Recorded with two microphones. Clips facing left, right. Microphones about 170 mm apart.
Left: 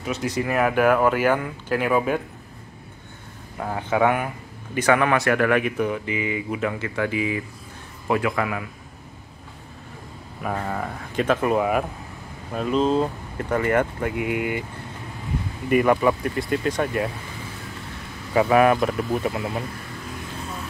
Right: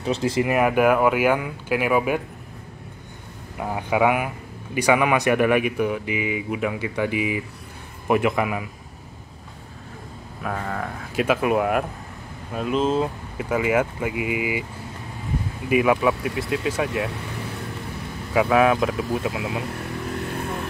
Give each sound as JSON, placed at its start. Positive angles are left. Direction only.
{"t": 0.0, "sound": "speech", "side_deg": -30}
{"t": 0.6, "sound": "speech", "side_deg": -5}
{"t": 3.5, "sound": "speech", "side_deg": -10}
{"t": 10.4, "sound": "speech", "side_deg": 5}
{"t": 11.1, "sound": "speech", "side_deg": -10}
{"t": 15.7, "sound": "speech", "side_deg": 0}
{"t": 18.3, "sound": "speech", "side_deg": 0}
{"t": 20.2, "sound": "motorcycle", "side_deg": -65}